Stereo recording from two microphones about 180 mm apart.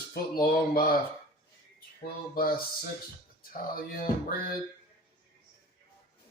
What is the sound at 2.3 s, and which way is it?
Music, 55° left (ahead or behind).